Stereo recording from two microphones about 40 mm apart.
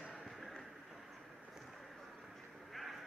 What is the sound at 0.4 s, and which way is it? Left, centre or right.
Vehicle, centre.